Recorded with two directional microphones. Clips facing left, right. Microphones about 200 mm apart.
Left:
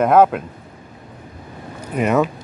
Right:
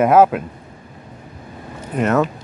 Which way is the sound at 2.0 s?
5° left (ahead or behind).